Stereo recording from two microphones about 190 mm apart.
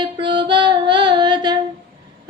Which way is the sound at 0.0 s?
25° right (ahead or behind).